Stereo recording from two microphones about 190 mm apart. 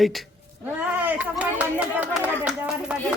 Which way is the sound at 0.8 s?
10° right (ahead or behind).